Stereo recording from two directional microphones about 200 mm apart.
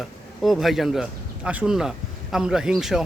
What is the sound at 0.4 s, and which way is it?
Speech, centre (ahead or behind).